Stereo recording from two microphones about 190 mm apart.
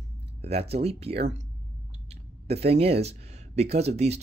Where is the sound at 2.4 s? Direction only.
35° right (ahead or behind).